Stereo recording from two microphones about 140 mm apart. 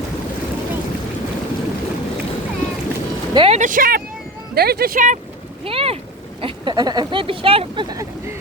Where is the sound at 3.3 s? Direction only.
40° right (ahead or behind).